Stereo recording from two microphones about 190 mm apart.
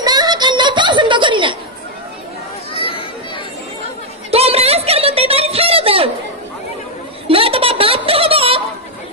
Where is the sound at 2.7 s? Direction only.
30° left (ahead or behind).